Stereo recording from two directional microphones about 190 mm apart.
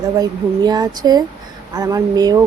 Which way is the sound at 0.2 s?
20° right (ahead or behind).